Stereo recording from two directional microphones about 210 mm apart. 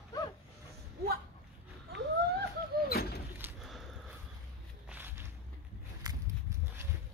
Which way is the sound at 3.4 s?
Centre (ahead or behind).